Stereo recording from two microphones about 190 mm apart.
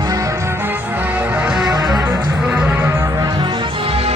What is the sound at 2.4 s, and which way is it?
Music, 5° right (ahead or behind).